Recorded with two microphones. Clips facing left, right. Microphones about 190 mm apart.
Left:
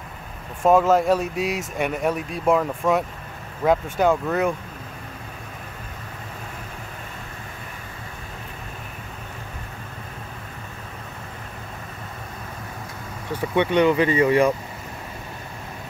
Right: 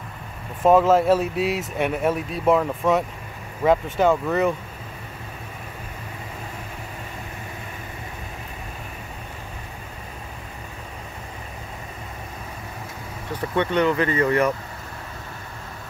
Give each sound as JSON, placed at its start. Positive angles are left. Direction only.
{"t": 0.6, "sound": "speech", "side_deg": 0}
{"t": 13.4, "sound": "speech", "side_deg": 15}